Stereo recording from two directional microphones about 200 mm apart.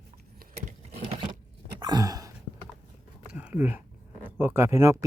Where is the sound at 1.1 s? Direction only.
25° right (ahead or behind).